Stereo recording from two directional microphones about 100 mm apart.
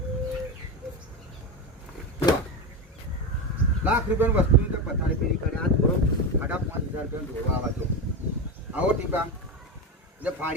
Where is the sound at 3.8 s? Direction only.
15° right (ahead or behind).